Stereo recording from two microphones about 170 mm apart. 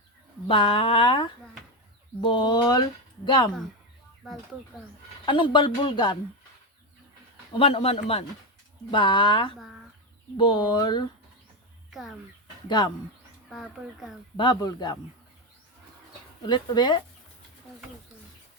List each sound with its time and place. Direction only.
0.4 s speech: 30° left (ahead or behind)
5.2 s speech: 25° left (ahead or behind)
7.5 s speech: 35° left (ahead or behind)
11.9 s speech: centre (ahead or behind)
12.6 s speech: 25° left (ahead or behind)
14.3 s speech: 25° left (ahead or behind)
16.5 s speech: 25° left (ahead or behind)